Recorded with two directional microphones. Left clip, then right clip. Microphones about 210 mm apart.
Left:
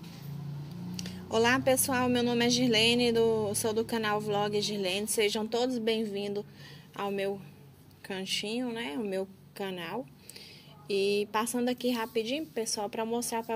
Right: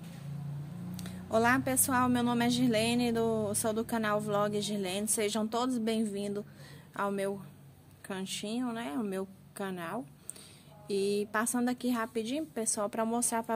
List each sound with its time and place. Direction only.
0.9 s a woman's voice: 15° right (ahead or behind)